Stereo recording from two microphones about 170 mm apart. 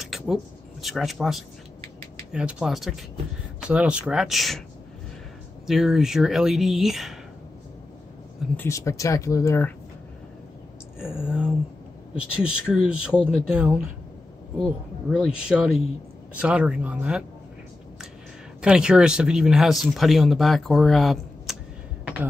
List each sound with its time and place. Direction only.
0.0 s a sound: centre (ahead or behind)
2.3 s speech: 5° right (ahead or behind)
5.7 s speech: centre (ahead or behind)
8.5 s speech: 15° left (ahead or behind)
11.1 s speech: 5° right (ahead or behind)
18.6 s speech: 5° right (ahead or behind)
22.0 s a sound: 10° right (ahead or behind)